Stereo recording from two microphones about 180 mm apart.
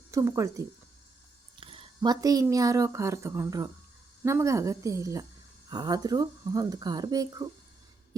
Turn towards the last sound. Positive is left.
turn(degrees=-20)  # may be behind; listen again after turning